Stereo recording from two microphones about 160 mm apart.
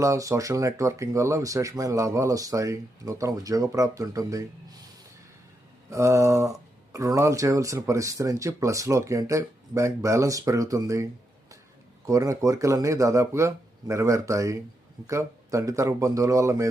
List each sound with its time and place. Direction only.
0.0 s speech: 20° right (ahead or behind)
5.9 s speech: 20° right (ahead or behind)
12.0 s speech: 20° right (ahead or behind)